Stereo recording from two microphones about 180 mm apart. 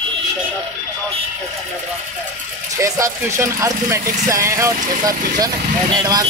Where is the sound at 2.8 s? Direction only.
15° right (ahead or behind).